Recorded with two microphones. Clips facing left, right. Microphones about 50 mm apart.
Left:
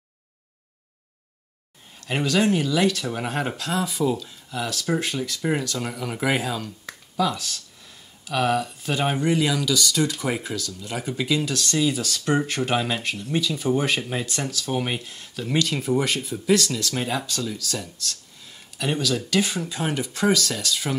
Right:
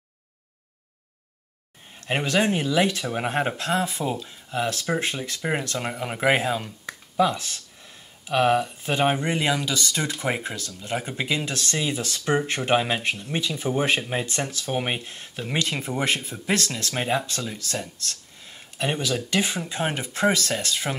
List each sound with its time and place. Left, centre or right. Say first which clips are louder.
2.0 s speech: left 1 dB; right